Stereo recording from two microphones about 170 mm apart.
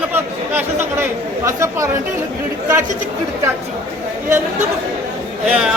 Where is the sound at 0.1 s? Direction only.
10° right (ahead or behind).